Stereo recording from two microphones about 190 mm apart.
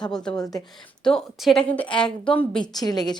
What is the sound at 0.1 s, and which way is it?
A woman's voice, 5° left (ahead or behind).